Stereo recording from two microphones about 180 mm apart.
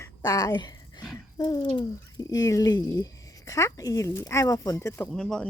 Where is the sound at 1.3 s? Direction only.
20° left (ahead or behind).